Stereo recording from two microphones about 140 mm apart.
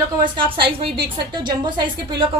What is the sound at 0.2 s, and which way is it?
A woman's voice, 40° right (ahead or behind).